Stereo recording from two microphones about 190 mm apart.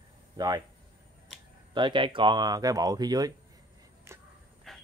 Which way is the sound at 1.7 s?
25° right (ahead or behind).